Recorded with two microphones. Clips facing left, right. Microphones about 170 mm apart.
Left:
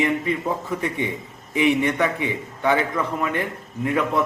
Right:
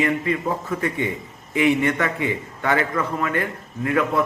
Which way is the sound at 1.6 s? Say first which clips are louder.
Even; 15° left (ahead or behind).